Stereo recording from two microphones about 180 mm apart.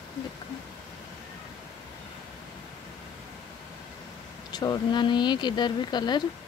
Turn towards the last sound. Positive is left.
turn(degrees=25)  # may be behind; listen again after turning